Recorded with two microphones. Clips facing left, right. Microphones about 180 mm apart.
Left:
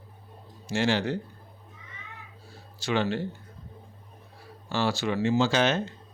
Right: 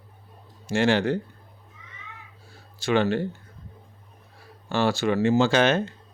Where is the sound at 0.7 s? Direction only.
55° right (ahead or behind).